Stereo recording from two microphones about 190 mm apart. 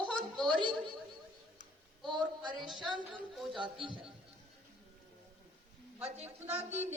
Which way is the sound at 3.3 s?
Centre (ahead or behind).